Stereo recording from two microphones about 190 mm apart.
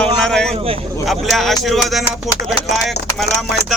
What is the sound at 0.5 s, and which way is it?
Speech, 30° right (ahead or behind).